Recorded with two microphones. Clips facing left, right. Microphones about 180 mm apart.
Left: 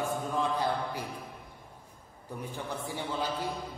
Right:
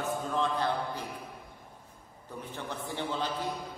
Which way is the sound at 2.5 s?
10° left (ahead or behind).